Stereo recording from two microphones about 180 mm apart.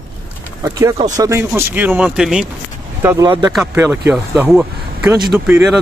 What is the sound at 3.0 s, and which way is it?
Speech, 15° right (ahead or behind).